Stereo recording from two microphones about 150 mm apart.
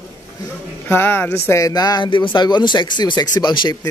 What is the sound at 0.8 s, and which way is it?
Speech, 15° left (ahead or behind).